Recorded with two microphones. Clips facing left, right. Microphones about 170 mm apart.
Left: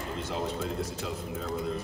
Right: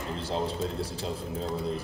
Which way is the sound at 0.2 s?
30° right (ahead or behind).